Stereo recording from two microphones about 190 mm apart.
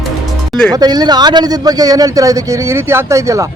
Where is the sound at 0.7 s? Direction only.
20° right (ahead or behind).